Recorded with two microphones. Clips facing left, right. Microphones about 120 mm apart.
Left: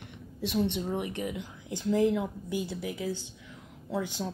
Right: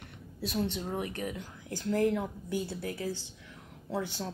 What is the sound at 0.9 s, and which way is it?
Speech, 20° left (ahead or behind).